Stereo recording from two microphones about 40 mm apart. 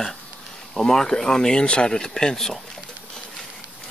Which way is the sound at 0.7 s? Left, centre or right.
Centre.